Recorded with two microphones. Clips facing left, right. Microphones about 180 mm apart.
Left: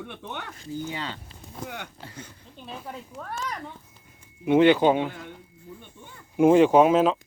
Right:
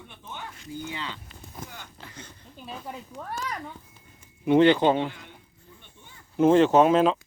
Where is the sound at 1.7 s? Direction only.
65° left (ahead or behind).